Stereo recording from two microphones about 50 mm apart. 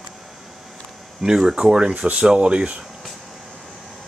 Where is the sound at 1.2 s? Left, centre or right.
Centre.